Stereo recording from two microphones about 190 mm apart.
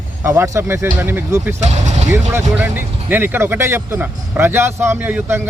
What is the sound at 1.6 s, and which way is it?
Speech, 35° right (ahead or behind).